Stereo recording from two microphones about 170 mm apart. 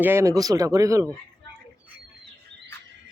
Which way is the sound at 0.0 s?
15° right (ahead or behind).